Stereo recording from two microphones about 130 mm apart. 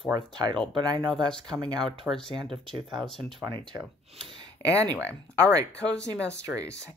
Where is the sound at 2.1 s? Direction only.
15° right (ahead or behind).